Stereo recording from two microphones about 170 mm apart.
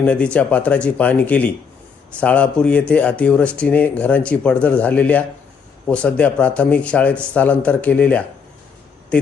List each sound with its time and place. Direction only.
0.0 s speech: 5° left (ahead or behind)